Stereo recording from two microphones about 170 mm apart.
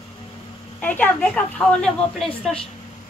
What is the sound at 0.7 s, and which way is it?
A woman's voice, 10° left (ahead or behind).